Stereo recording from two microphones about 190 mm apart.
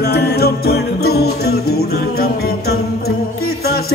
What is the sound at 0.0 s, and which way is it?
Jingle bell, 60° left (ahead or behind).